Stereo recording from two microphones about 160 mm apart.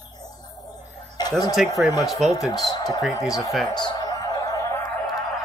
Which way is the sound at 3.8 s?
25° left (ahead or behind).